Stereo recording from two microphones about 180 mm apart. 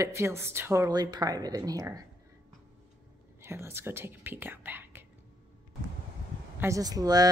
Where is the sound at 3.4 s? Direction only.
15° right (ahead or behind).